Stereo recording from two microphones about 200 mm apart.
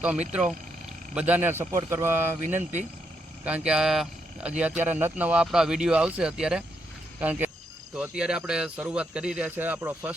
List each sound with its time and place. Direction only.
0.0 s speech: 5° right (ahead or behind)
2.5 s speech: 35° right (ahead or behind)
3.4 s speech: 5° right (ahead or behind)